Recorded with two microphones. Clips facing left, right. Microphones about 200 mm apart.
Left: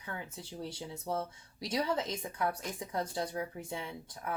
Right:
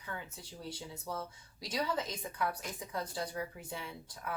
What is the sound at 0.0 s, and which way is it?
Speech, 25° left (ahead or behind).